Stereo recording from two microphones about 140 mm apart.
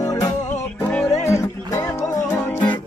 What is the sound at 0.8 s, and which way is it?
Music, 10° left (ahead or behind).